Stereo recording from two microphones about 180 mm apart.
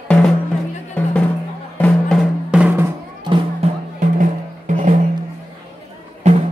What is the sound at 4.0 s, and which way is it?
Music, 45° right (ahead or behind).